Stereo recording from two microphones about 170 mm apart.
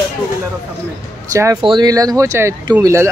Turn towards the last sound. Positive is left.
turn(degrees=-20)  # may be behind; listen again after turning